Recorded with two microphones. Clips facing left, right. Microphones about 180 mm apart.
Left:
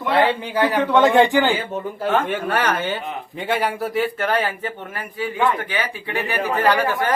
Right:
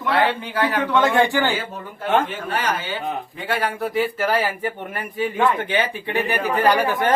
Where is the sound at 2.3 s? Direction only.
65° left (ahead or behind).